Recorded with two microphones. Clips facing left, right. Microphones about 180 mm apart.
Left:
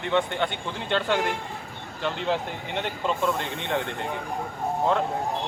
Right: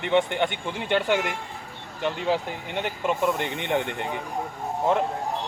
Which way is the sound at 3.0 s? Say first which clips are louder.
Right 2 dB; 15° right (ahead or behind).